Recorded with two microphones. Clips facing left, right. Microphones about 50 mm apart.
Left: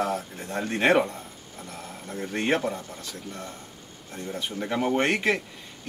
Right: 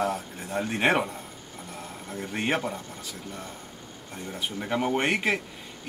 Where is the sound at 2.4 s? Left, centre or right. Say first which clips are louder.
Left 2 dB; centre.